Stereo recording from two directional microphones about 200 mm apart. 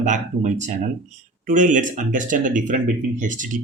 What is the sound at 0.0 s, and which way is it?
Speech, 40° right (ahead or behind).